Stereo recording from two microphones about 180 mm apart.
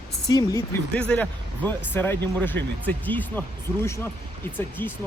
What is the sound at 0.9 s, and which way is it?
Speech, 5° left (ahead or behind).